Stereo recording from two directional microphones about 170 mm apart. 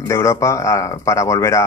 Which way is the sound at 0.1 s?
15° left (ahead or behind).